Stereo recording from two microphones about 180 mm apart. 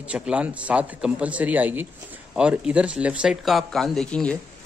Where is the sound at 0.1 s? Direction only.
5° right (ahead or behind).